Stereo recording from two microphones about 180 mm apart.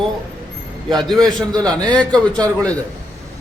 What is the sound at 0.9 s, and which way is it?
A man's voice, centre (ahead or behind).